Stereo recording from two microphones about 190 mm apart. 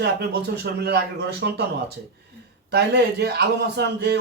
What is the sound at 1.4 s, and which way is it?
Speech, 60° right (ahead or behind).